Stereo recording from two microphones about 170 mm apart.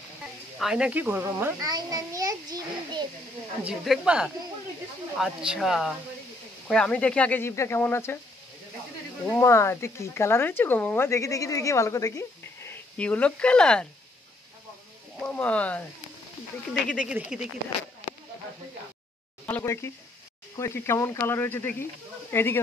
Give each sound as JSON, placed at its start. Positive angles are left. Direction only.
{"t": 0.6, "sound": "a child's voice", "side_deg": -5}
{"t": 3.6, "sound": "speech", "side_deg": -5}
{"t": 9.2, "sound": "speech", "side_deg": 10}
{"t": 12.9, "sound": "speech", "side_deg": 5}
{"t": 15.2, "sound": "speech", "side_deg": 10}
{"t": 16.9, "sound": "speech", "side_deg": -5}
{"t": 19.4, "sound": "speech", "side_deg": 15}